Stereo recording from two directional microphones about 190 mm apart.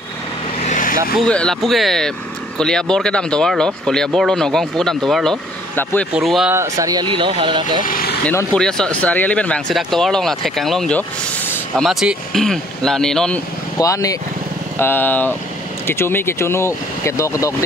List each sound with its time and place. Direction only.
0.7 s vehicle: 45° left (ahead or behind)
1.2 s speech: 5° left (ahead or behind)
6.5 s speech: 15° right (ahead or behind)
7.8 s speech: 50° left (ahead or behind)
8.3 s speech: 5° left (ahead or behind)
13.7 s speech: 20° left (ahead or behind)